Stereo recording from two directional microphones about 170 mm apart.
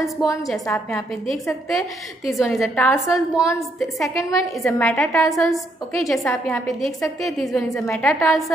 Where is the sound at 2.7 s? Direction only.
10° left (ahead or behind).